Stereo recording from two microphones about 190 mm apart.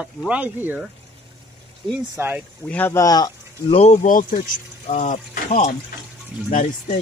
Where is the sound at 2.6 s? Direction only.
10° left (ahead or behind).